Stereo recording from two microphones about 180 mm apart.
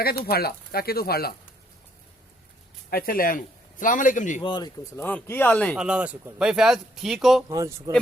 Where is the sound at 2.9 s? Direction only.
55° left (ahead or behind).